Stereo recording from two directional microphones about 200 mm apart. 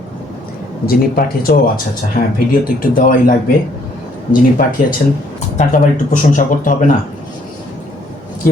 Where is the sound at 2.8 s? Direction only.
45° left (ahead or behind).